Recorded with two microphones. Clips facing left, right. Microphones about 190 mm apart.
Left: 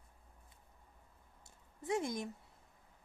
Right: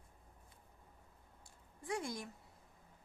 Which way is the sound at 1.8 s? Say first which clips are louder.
Left 5 dB; 20° left (ahead or behind).